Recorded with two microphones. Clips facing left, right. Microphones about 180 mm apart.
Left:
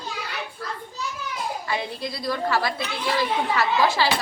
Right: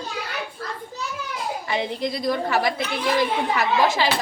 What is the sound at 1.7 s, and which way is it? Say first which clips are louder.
A woman's voice: right 7 dB; 20° right (ahead or behind).